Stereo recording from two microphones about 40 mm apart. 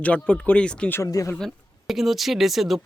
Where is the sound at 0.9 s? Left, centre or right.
Left.